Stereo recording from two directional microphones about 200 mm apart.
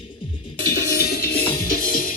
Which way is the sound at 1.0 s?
50° left (ahead or behind).